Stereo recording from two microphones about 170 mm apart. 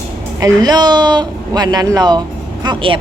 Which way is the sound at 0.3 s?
20° right (ahead or behind).